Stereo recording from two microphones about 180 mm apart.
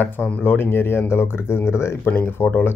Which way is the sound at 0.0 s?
10° left (ahead or behind).